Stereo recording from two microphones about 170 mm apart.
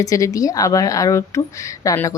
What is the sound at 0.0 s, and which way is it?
A woman's voice, 20° left (ahead or behind).